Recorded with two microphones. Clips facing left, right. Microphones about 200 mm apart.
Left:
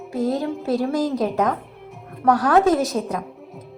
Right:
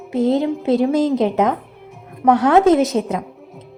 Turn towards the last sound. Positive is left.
turn(degrees=-20)  # may be behind; listen again after turning